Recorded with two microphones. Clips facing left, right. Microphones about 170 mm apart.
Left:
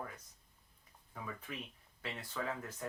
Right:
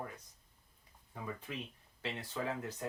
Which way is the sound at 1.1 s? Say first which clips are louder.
Right 3 dB; 20° right (ahead or behind).